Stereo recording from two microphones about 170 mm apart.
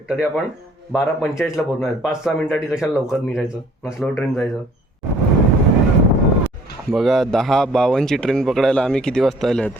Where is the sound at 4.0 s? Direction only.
Centre (ahead or behind).